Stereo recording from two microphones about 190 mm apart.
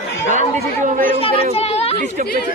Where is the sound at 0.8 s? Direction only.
45° right (ahead or behind).